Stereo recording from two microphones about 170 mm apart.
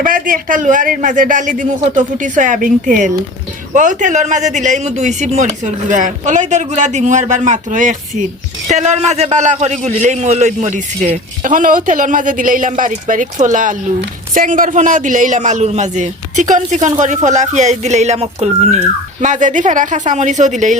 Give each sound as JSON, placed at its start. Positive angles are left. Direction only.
{"t": 0.0, "sound": "a man's voice", "side_deg": -55}